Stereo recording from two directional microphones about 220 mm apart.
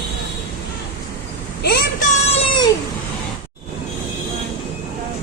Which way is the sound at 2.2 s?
25° left (ahead or behind).